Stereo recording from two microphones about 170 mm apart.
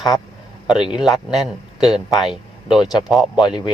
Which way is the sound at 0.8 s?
5° right (ahead or behind).